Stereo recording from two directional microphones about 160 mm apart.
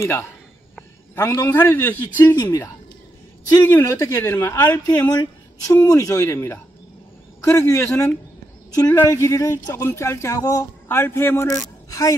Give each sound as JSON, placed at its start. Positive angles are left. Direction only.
{"t": 0.0, "sound": "speech", "side_deg": 15}
{"t": 3.6, "sound": "speech", "side_deg": 15}